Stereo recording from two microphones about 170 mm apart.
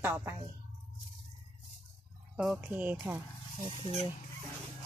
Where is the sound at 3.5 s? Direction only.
45° right (ahead or behind).